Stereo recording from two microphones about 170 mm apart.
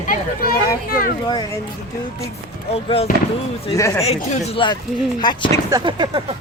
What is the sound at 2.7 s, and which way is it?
Speech, 35° left (ahead or behind).